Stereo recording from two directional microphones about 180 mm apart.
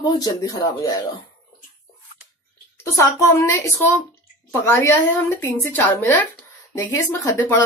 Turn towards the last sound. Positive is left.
turn(degrees=15)  # may be behind; listen again after turning